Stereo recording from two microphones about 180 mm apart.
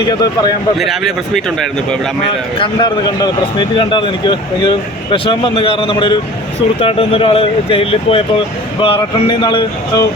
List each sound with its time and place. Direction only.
0.8 s speech: centre (ahead or behind)
2.6 s speech: 25° left (ahead or behind)